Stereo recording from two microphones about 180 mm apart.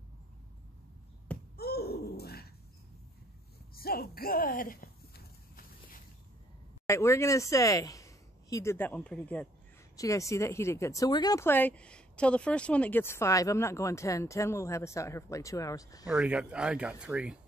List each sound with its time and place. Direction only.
1.6 s bird: 60° left (ahead or behind)
3.7 s a sound: 55° left (ahead or behind)
6.9 s speech: 15° left (ahead or behind)
9.9 s speech: 20° left (ahead or behind)
16.1 s speech: 5° right (ahead or behind)